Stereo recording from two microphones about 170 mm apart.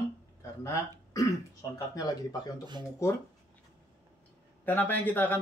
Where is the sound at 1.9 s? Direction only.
20° left (ahead or behind).